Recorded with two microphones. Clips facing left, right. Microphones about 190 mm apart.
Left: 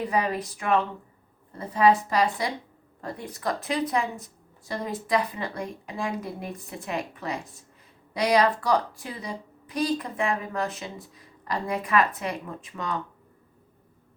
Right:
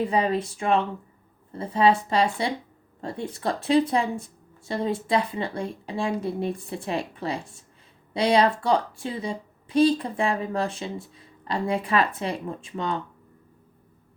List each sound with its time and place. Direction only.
0.0 s a woman's voice: 25° right (ahead or behind)